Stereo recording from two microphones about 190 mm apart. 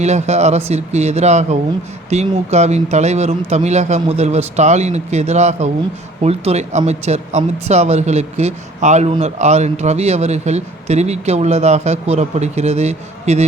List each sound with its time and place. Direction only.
0.0 s speech: 35° right (ahead or behind)